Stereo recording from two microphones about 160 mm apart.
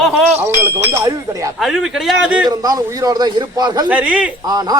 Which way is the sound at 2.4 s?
25° right (ahead or behind).